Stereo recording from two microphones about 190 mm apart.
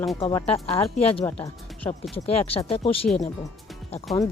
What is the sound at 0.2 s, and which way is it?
Speech, 25° left (ahead or behind).